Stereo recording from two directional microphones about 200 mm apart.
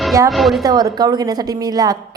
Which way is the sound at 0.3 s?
Centre (ahead or behind).